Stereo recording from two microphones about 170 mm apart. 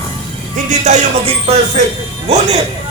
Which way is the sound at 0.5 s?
45° right (ahead or behind).